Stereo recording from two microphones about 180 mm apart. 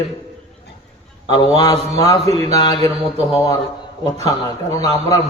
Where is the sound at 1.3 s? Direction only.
25° left (ahead or behind).